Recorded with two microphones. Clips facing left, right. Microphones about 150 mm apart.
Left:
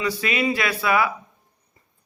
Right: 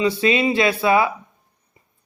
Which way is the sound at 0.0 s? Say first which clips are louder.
Right 5 dB; 25° right (ahead or behind).